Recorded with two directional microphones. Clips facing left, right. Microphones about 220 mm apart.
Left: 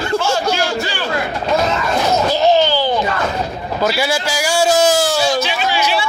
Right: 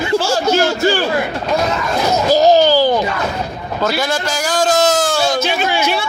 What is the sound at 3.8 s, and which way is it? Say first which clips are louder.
A man's voice: even; 10° left (ahead or behind).